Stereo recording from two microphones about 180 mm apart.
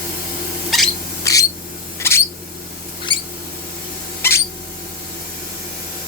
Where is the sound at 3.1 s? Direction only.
25° left (ahead or behind).